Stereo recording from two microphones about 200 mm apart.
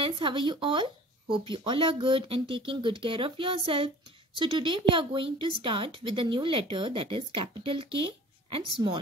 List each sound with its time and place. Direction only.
0.0 s a woman's voice: 25° right (ahead or behind)